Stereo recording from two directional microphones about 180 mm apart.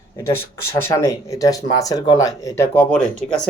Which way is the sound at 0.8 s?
15° left (ahead or behind).